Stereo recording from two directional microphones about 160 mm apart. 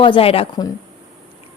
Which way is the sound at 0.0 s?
35° left (ahead or behind).